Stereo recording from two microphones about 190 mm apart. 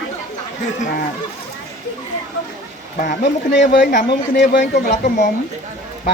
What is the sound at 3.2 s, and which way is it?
Speech, 65° left (ahead or behind).